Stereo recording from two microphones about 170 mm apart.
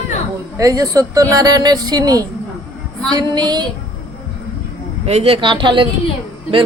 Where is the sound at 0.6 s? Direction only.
20° right (ahead or behind).